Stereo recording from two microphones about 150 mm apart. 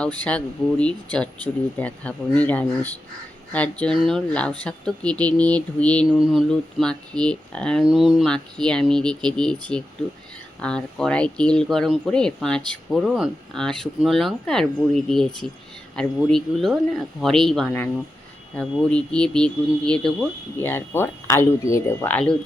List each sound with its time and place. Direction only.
0.2 s speech: 10° left (ahead or behind)
20.6 s speech: 15° left (ahead or behind)